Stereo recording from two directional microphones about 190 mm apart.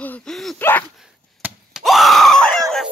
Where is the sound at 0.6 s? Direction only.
10° left (ahead or behind).